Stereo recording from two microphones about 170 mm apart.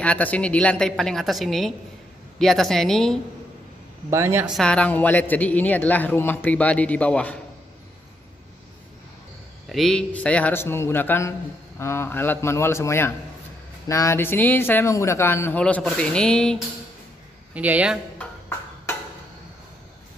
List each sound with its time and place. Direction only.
0.0 s a woman's voice: 10° left (ahead or behind)
4.1 s speech: 15° right (ahead or behind)
4.6 s speech: 5° left (ahead or behind)
9.7 s speech: centre (ahead or behind)
17.6 s speech: 10° right (ahead or behind)